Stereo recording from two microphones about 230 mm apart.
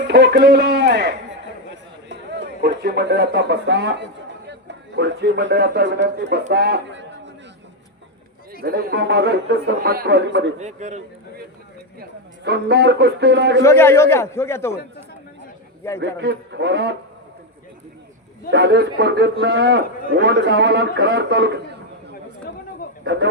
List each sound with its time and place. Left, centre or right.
0.1 s a man's voice: right
1.7 s a sound: right
4.4 s a man's voice: right
8.6 s a man's voice: right
10.6 s a man's voice: right
12.5 s a man's voice: right
13.6 s a man's voice: centre
16.0 s a man's voice: right
18.5 s a man's voice: right